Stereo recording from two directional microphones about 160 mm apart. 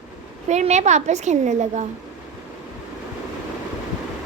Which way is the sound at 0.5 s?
45° right (ahead or behind).